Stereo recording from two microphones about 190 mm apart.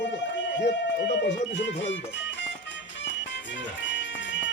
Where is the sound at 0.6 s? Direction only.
65° left (ahead or behind).